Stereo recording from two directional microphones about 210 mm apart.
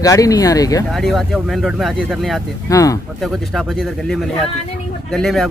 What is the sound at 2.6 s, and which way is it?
Speech, 15° left (ahead or behind).